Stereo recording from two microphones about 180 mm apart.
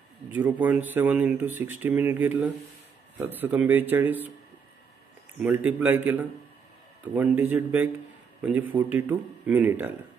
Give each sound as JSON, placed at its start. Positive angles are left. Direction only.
{"t": 0.3, "sound": "speech", "side_deg": -10}
{"t": 5.4, "sound": "speech", "side_deg": -10}